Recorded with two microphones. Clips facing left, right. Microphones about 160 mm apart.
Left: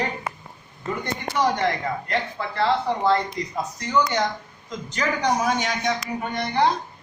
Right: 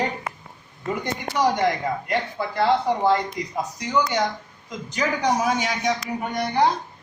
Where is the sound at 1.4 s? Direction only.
10° right (ahead or behind).